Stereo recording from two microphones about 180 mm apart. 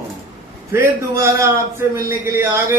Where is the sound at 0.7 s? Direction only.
15° right (ahead or behind).